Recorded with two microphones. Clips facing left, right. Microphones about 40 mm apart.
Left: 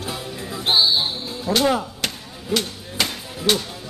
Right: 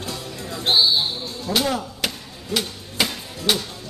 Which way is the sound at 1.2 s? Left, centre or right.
Centre.